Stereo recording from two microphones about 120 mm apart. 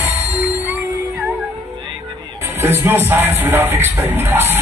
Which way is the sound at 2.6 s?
20° right (ahead or behind).